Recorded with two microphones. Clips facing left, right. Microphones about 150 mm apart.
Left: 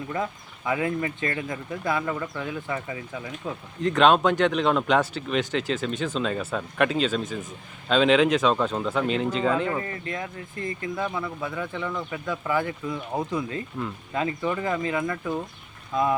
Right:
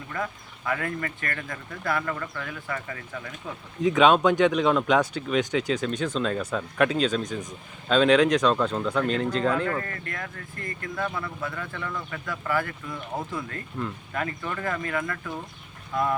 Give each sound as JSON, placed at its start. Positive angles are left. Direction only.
{"t": 0.1, "sound": "speech", "side_deg": 20}
{"t": 3.8, "sound": "speech", "side_deg": 0}